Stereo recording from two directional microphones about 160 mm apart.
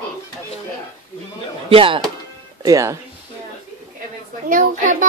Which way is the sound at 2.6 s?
20° right (ahead or behind).